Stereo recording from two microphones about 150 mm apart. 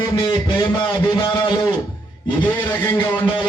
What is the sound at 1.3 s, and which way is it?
Speech, 35° left (ahead or behind).